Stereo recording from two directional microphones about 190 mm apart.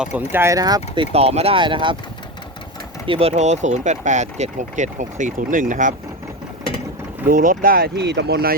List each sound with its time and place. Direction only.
0.0 s speech: 10° right (ahead or behind)
1.1 s speech: 35° right (ahead or behind)
3.1 s speech: 30° right (ahead or behind)
7.3 s speech: 45° right (ahead or behind)